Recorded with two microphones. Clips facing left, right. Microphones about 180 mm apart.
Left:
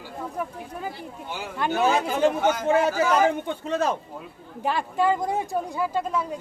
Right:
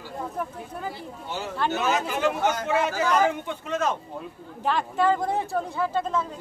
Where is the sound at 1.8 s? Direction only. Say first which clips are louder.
Left 6 dB; 35° left (ahead or behind).